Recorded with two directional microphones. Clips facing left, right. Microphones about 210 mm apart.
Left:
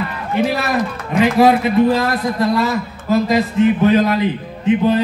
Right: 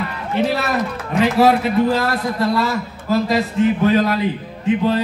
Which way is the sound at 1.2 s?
15° left (ahead or behind).